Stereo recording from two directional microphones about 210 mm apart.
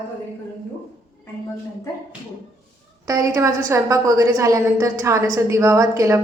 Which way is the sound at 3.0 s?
15° right (ahead or behind).